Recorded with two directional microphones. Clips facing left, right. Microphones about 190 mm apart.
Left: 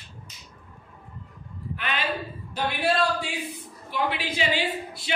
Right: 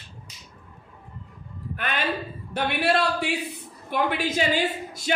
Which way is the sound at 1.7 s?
50° right (ahead or behind).